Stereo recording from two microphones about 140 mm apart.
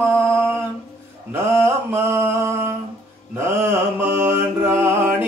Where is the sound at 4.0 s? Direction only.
15° right (ahead or behind).